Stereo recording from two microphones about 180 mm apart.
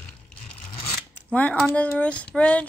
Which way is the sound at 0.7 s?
30° left (ahead or behind).